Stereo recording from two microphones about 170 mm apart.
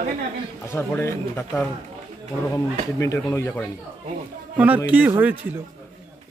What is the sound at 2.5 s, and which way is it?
Speech, 20° left (ahead or behind).